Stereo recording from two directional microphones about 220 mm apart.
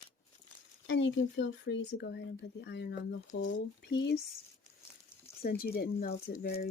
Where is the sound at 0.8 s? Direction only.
55° left (ahead or behind).